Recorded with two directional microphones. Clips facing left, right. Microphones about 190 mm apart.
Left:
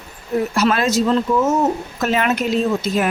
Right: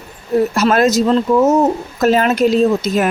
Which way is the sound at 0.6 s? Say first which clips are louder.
Right 2 dB; 45° right (ahead or behind).